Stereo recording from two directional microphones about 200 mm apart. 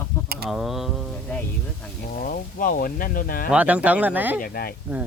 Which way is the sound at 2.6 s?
45° left (ahead or behind).